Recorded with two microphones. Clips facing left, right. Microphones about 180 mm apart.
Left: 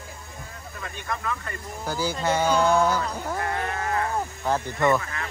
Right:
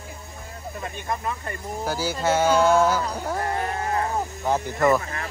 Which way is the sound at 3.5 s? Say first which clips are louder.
Right 2 dB; 30° right (ahead or behind).